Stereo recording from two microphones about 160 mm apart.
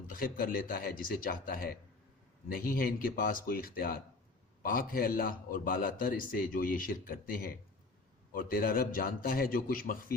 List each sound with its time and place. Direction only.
0.1 s a man's voice: 65° left (ahead or behind)